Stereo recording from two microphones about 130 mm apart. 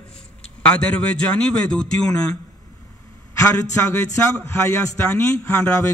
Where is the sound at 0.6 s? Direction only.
10° left (ahead or behind).